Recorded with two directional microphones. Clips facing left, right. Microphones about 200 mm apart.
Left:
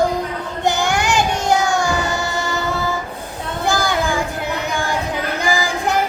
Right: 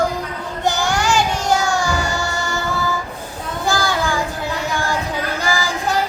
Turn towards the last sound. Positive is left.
turn(degrees=15)  # may be behind; listen again after turning